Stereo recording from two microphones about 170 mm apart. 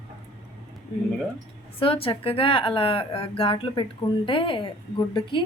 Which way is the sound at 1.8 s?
35° left (ahead or behind).